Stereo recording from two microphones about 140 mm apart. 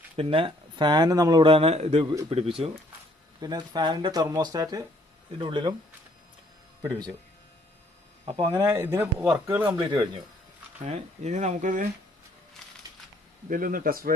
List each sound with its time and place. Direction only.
0.2 s speech: 40° right (ahead or behind)
3.4 s speech: 30° right (ahead or behind)
8.2 s speech: 40° right (ahead or behind)
8.4 s speech: 25° right (ahead or behind)
9.6 s speech: 30° right (ahead or behind)
10.8 s speech: 50° right (ahead or behind); by 11.9 s 65° right (ahead or behind)
13.5 s speech: 90° right